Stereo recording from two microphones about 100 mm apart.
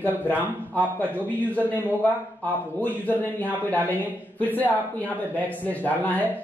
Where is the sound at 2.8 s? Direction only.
15° left (ahead or behind).